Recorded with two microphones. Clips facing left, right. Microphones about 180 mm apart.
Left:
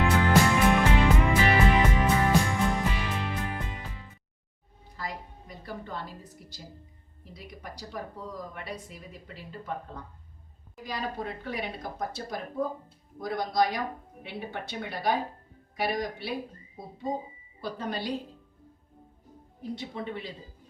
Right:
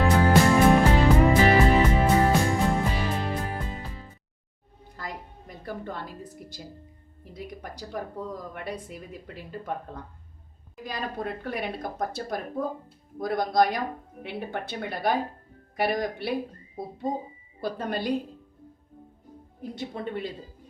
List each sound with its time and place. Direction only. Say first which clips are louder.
0.0 s music: right 3 dB; 40° right (ahead or behind)
5.5 s music: right 4 dB; 50° right (ahead or behind)
7.3 s speech: right 5 dB; 50° right (ahead or behind)
17.6 s speech: right 4 dB; 50° right (ahead or behind)
19.7 s speech: right 3 dB; 55° right (ahead or behind)